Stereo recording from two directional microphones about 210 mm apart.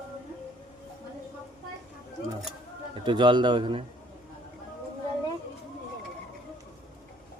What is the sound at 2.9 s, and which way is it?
Speech, 20° right (ahead or behind).